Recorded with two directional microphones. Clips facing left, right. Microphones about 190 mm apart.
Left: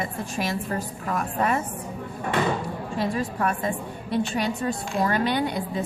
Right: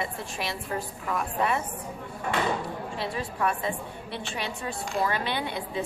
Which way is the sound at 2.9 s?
45° left (ahead or behind).